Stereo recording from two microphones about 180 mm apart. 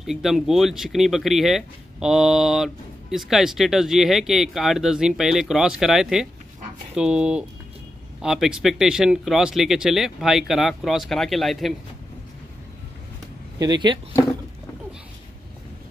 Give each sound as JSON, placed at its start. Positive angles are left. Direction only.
{"t": 0.0, "sound": "speech", "side_deg": 0}
{"t": 13.6, "sound": "speech", "side_deg": -25}